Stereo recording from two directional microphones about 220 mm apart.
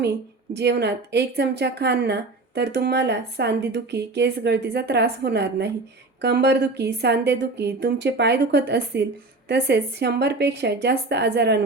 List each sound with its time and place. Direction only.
0.0 s a woman's voice: 50° right (ahead or behind)